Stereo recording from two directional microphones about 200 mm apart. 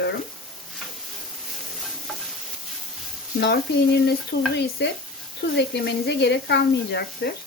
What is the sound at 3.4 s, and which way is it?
Speech, 55° left (ahead or behind).